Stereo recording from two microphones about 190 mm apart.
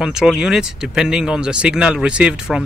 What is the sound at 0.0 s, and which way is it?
Speech, 5° right (ahead or behind).